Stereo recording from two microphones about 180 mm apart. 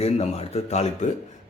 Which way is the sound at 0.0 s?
35° left (ahead or behind).